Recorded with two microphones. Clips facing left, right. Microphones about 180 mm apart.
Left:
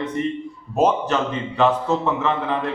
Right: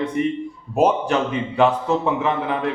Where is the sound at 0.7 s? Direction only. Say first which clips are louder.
Right 1 dB; 10° right (ahead or behind).